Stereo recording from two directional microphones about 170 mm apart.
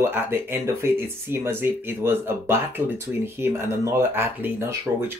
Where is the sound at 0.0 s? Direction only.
15° right (ahead or behind).